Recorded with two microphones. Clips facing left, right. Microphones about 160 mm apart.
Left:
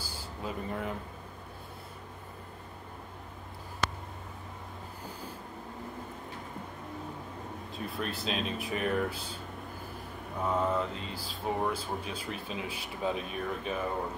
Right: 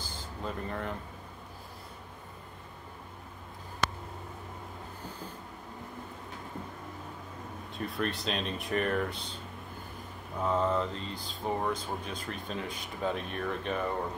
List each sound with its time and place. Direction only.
0.0 s a sound: 10° left (ahead or behind)
7.7 s speech: centre (ahead or behind)
10.4 s speech: 5° left (ahead or behind)